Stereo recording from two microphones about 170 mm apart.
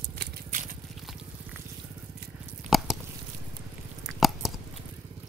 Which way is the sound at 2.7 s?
45° right (ahead or behind).